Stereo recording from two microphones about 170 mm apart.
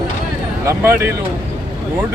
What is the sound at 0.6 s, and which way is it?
Speech, 15° right (ahead or behind).